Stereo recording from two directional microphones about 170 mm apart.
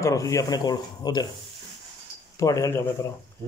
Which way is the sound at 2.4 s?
20° left (ahead or behind).